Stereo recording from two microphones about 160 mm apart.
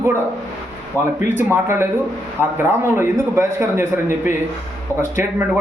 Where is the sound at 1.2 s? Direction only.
15° right (ahead or behind).